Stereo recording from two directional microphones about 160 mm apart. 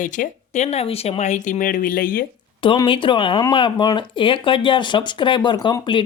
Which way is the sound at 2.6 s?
30° left (ahead or behind).